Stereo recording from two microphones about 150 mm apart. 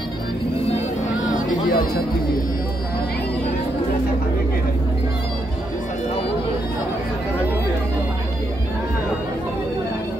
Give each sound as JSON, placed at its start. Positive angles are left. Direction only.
{"t": 1.7, "sound": "chatter", "side_deg": 75}